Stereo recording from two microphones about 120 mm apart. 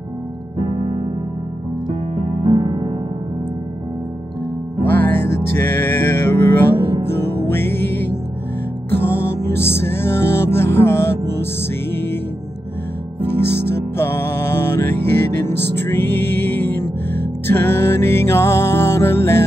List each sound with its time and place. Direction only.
1.9 s music: 50° right (ahead or behind)
4.8 s music: 15° left (ahead or behind)
13.9 s music: 20° left (ahead or behind)